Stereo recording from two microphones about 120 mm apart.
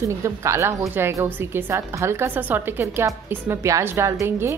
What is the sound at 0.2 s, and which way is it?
A woman's voice, 25° right (ahead or behind).